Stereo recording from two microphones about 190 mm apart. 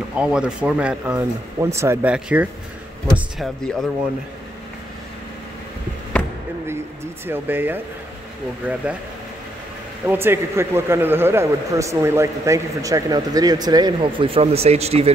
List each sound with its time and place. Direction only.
0.1 s speech: 5° right (ahead or behind)
7.2 s speech: 10° right (ahead or behind)
10.0 s speech: 10° right (ahead or behind); by 15.1 s 35° right (ahead or behind)